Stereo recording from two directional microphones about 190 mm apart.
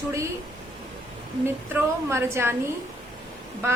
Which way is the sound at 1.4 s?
15° right (ahead or behind).